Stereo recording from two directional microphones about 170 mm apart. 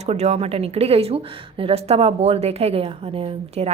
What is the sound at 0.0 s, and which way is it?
A woman's voice, 40° right (ahead or behind).